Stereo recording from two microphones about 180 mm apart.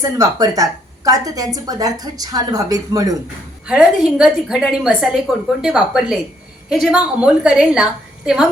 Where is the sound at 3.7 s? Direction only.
5° right (ahead or behind).